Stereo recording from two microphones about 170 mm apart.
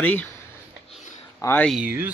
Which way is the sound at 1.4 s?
10° left (ahead or behind).